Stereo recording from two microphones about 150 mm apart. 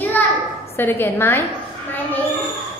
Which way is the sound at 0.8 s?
15° left (ahead or behind).